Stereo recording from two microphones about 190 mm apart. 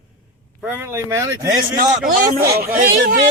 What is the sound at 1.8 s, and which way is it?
Speech, 50° right (ahead or behind).